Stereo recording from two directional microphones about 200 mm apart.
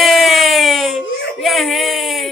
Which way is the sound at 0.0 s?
Centre (ahead or behind).